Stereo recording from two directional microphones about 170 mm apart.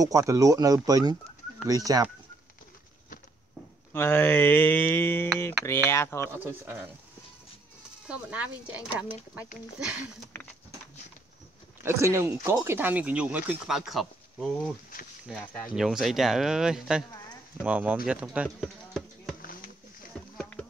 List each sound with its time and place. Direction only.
0.0 s speech: 20° right (ahead or behind)
3.9 s speech: 10° left (ahead or behind)
6.2 s speech: 10° right (ahead or behind)
8.1 s speech: 10° right (ahead or behind)
11.8 s speech: 15° right (ahead or behind); by 14.7 s centre (ahead or behind)
15.7 s speech: centre (ahead or behind)
19.4 s a sound: 55° left (ahead or behind)
20.3 s a sound: 5° left (ahead or behind)